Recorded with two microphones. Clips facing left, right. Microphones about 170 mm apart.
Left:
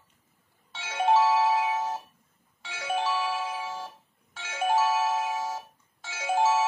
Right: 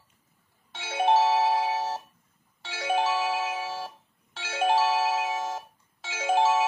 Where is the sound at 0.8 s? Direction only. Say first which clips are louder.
Even; 25° right (ahead or behind).